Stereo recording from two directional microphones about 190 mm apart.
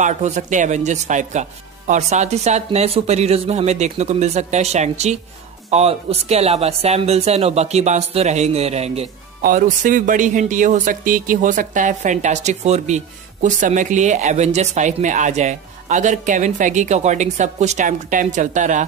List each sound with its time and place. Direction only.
0.0 s speech: 40° right (ahead or behind)
9.4 s speech: 45° right (ahead or behind)